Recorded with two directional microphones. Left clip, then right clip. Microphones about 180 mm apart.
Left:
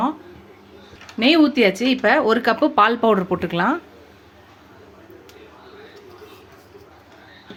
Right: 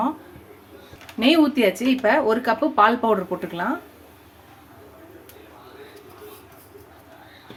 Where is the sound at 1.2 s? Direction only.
25° left (ahead or behind).